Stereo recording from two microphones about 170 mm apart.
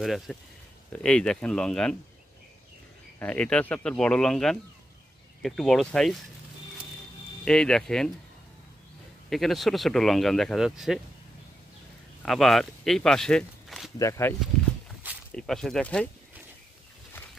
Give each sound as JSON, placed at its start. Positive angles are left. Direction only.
{"t": 0.0, "sound": "speech", "side_deg": 0}
{"t": 3.2, "sound": "speech", "side_deg": 10}
{"t": 7.4, "sound": "speech", "side_deg": 5}
{"t": 9.3, "sound": "speech", "side_deg": 0}
{"t": 12.2, "sound": "speech", "side_deg": 0}
{"t": 13.9, "sound": "speech", "side_deg": 15}
{"t": 15.3, "sound": "speech", "side_deg": 5}